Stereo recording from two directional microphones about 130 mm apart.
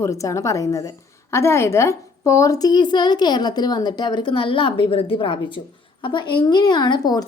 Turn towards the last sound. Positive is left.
turn(degrees=30)  # may be behind; listen again after turning